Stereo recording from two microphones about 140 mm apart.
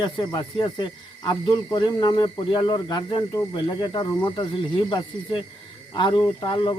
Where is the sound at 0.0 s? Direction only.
30° left (ahead or behind).